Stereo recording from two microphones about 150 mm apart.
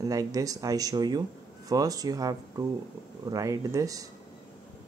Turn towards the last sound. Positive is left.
turn(degrees=-20)  # may be behind; listen again after turning